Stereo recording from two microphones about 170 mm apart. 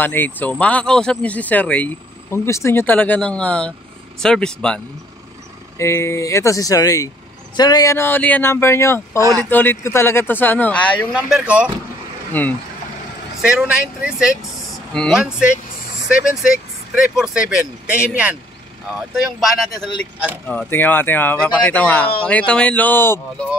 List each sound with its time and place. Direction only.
0.0 s speech: 10° left (ahead or behind)
5.8 s speech: 15° left (ahead or behind)
11.3 s speech: 5° right (ahead or behind)
12.3 s speech: 10° left (ahead or behind)
13.4 s speech: 5° right (ahead or behind); by 23.2 s 15° left (ahead or behind)